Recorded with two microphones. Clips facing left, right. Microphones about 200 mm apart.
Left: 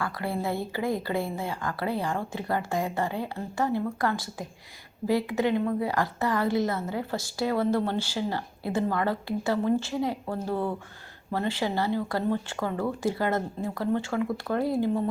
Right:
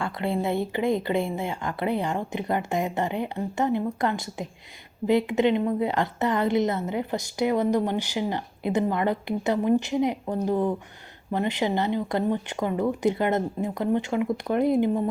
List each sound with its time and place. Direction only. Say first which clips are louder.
0.0 s a woman's voice: right 3 dB; 25° right (ahead or behind)